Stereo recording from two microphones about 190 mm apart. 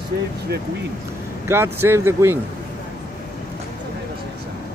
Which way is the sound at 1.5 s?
10° right (ahead or behind).